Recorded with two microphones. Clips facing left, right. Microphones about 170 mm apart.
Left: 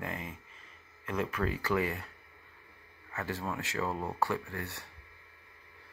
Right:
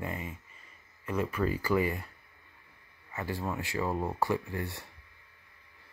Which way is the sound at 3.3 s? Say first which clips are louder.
Right 3 dB; 10° right (ahead or behind).